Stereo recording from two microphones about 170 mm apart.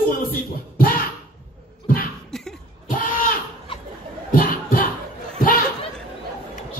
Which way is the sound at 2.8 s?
55° left (ahead or behind).